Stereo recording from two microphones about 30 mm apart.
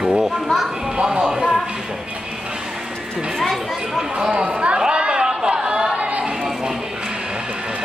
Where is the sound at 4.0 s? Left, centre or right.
Right.